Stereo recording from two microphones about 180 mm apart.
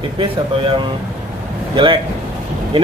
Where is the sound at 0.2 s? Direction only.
30° right (ahead or behind).